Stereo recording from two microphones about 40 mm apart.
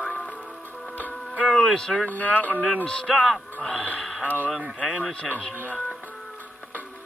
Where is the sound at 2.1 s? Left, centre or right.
Left.